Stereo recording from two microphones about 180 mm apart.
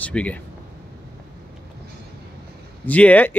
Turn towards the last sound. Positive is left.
turn(degrees=10)  # may be behind; listen again after turning